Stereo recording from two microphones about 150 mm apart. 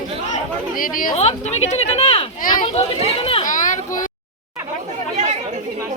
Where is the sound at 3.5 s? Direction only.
60° left (ahead or behind).